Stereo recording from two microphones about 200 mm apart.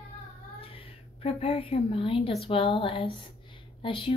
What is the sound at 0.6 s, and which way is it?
Speech, 25° left (ahead or behind).